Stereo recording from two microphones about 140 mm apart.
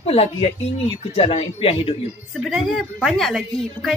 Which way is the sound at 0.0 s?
45° left (ahead or behind).